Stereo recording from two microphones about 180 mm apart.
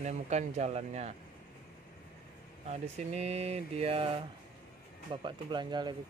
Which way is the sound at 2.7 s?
35° right (ahead or behind).